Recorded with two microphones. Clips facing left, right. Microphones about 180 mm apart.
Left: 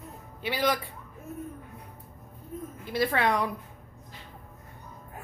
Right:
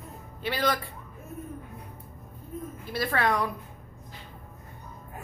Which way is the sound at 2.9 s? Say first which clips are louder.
Left 1 dB; 20° left (ahead or behind).